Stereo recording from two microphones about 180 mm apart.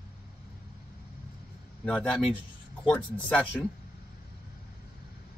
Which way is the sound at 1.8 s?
5° left (ahead or behind).